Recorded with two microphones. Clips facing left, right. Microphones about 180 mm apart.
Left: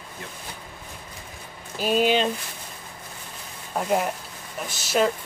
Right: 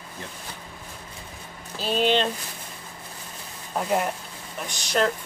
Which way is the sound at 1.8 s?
10° left (ahead or behind).